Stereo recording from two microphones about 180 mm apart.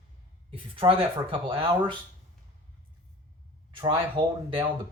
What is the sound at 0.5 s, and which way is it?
Speech, 30° right (ahead or behind).